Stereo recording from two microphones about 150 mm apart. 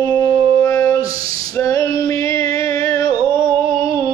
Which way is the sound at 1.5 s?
20° left (ahead or behind).